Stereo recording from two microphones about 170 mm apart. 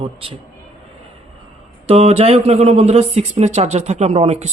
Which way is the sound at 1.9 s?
35° right (ahead or behind).